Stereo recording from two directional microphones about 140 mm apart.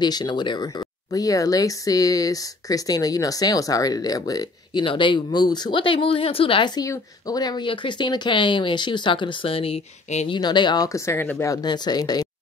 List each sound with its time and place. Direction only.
0.0 s speech: 30° left (ahead or behind); by 10.3 s 50° left (ahead or behind)
10.3 s speech: 35° left (ahead or behind)